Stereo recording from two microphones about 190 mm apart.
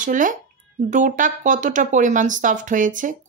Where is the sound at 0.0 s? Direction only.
45° right (ahead or behind).